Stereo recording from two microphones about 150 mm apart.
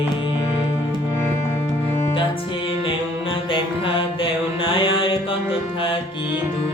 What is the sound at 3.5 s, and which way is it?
Mantra, 35° left (ahead or behind).